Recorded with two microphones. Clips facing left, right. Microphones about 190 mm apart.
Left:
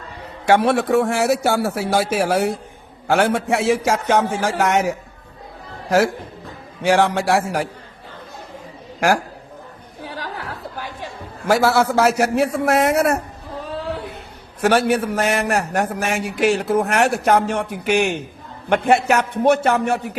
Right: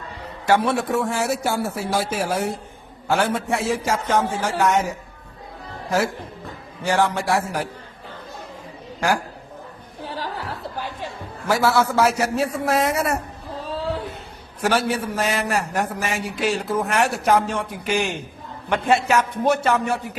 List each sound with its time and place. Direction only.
0.4 s a man's voice: 70° left (ahead or behind)
6.8 s a man's voice: 80° left
9.0 s a man's voice: 75° left (ahead or behind)
10.0 s a sound: 15° left (ahead or behind)
11.4 s a man's voice: 70° left (ahead or behind)
14.6 s a man's voice: 65° left (ahead or behind)